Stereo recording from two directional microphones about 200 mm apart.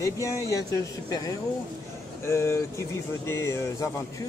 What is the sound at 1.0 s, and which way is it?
Speech, 20° left (ahead or behind).